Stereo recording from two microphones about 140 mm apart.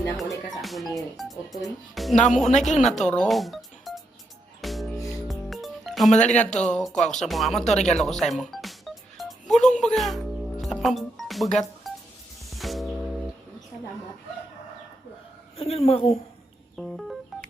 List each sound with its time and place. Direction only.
0.5 s music: centre (ahead or behind)
0.9 s speech: centre (ahead or behind)
2.1 s speech: 60° left (ahead or behind)
3.0 s speech: 5° left (ahead or behind)
4.6 s music: centre (ahead or behind)
6.2 s speech: 10° left (ahead or behind)
7.5 s a woman's voice: 55° left (ahead or behind)
7.9 s music: 5° left (ahead or behind)
11.9 s telephone dialing: centre (ahead or behind)
12.5 s music: centre (ahead or behind)
15.5 s a woman's voice: 45° left (ahead or behind)
16.7 s music: centre (ahead or behind)